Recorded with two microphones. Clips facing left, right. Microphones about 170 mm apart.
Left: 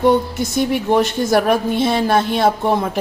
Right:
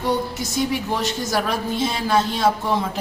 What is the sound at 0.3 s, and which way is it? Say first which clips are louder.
A woman's voice: left 5 dB; 60° left (ahead or behind).